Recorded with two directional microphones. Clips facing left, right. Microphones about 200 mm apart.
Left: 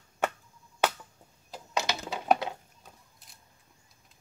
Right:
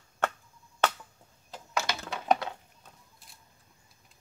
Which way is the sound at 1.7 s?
20° left (ahead or behind).